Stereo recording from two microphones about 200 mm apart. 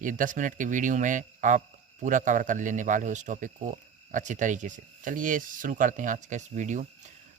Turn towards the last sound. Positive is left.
turn(degrees=-35)  # may be behind; listen again after turning